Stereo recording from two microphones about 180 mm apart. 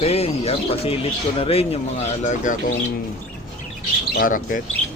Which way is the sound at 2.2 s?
45° left (ahead or behind).